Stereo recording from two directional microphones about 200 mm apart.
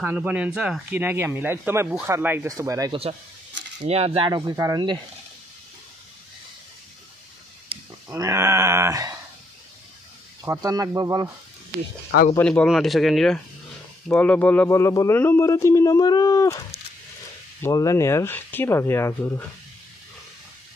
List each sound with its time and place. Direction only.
0.0 s speech: 10° right (ahead or behind)
3.8 s speech: 30° right (ahead or behind)
8.1 s speech: 15° right (ahead or behind)
10.4 s speech: 15° right (ahead or behind)
12.4 s speech: 5° left (ahead or behind)